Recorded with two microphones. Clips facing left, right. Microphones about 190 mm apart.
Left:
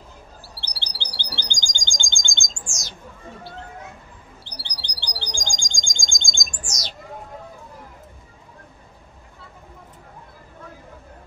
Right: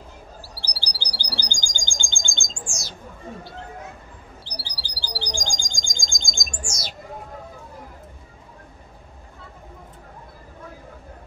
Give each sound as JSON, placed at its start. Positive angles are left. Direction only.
{"t": 0.6, "sound": "chirp", "side_deg": 25}
{"t": 4.5, "sound": "chirp", "side_deg": 0}